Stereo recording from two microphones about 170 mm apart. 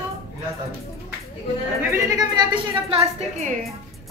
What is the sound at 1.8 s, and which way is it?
A woman's voice, 15° right (ahead or behind).